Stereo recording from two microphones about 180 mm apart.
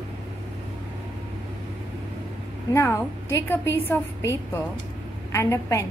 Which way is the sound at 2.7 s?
15° left (ahead or behind).